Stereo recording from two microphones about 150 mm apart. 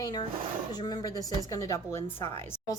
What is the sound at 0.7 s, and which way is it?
A woman's voice, 25° left (ahead or behind).